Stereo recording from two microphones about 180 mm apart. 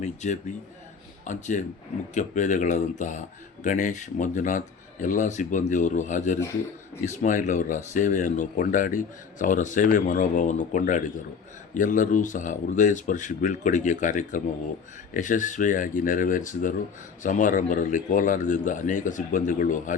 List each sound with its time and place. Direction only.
0.0 s speech: 40° left (ahead or behind)